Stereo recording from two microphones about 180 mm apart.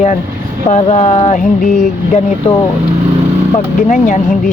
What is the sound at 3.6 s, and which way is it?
Speech, 45° left (ahead or behind).